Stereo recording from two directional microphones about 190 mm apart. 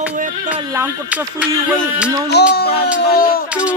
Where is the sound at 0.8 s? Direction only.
5° right (ahead or behind).